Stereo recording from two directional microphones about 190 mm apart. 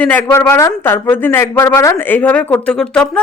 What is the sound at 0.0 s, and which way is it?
A woman's voice, 10° left (ahead or behind).